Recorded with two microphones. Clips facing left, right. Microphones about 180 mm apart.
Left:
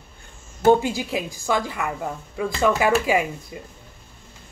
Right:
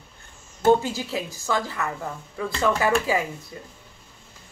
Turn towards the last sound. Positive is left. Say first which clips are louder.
# left 4 dB
turn(degrees=15)  # may be behind; listen again after turning